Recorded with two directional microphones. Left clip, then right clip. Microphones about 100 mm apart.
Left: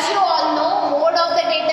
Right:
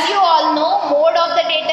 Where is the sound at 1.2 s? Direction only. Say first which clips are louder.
Right 2 dB; 55° right (ahead or behind).